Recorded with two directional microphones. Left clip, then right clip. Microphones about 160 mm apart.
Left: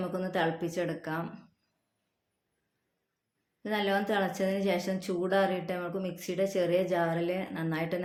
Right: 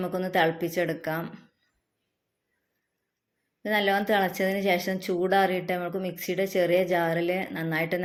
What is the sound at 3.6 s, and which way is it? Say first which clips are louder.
A woman's voice: right 5 dB; 20° right (ahead or behind).